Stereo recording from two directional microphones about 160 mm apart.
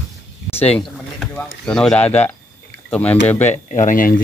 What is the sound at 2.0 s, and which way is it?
Speech, 45° left (ahead or behind).